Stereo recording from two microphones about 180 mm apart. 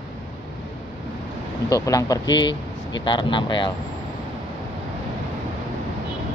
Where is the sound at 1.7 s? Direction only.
20° left (ahead or behind).